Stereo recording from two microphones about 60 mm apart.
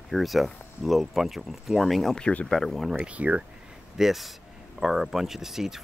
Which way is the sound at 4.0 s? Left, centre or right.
Centre.